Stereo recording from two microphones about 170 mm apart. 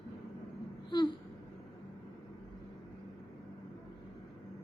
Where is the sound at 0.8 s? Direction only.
25° left (ahead or behind).